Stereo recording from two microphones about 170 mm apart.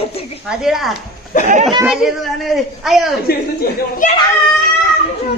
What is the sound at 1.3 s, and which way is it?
Speech, 50° left (ahead or behind).